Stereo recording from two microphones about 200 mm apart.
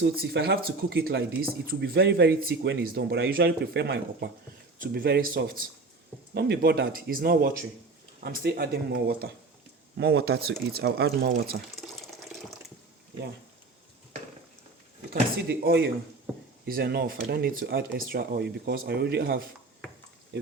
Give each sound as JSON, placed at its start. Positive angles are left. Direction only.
{"t": 0.0, "sound": "speech", "side_deg": -55}
{"t": 11.8, "sound": "water", "side_deg": 0}
{"t": 15.1, "sound": "speech", "side_deg": -50}